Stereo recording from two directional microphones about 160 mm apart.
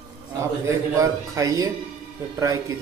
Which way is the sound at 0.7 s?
20° right (ahead or behind).